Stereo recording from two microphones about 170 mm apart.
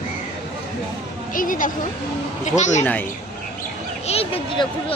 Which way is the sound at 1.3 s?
50° left (ahead or behind).